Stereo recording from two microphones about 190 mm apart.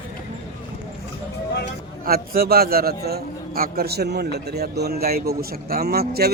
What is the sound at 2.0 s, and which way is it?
A man's voice, 50° right (ahead or behind).